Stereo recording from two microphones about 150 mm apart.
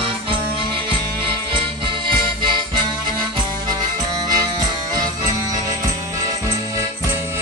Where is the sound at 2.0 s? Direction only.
30° right (ahead or behind).